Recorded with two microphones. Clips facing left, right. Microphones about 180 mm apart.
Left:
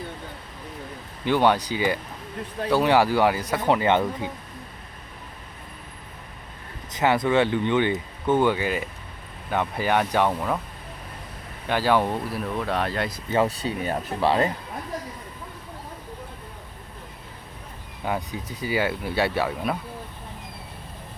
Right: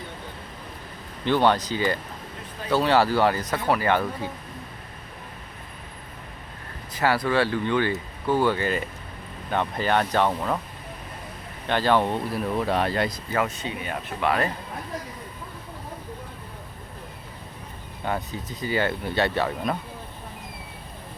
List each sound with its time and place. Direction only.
1.2 s speech: 10° left (ahead or behind)
6.9 s speech: 20° left (ahead or behind)
11.7 s speech: 10° left (ahead or behind)
13.3 s speech: 30° left (ahead or behind)
18.0 s speech: 10° left (ahead or behind)